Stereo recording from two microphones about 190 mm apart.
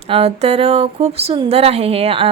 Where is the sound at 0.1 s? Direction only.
30° right (ahead or behind).